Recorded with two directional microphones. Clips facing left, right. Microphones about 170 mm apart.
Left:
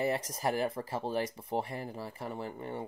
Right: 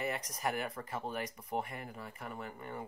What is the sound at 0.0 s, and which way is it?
Speech, 30° left (ahead or behind).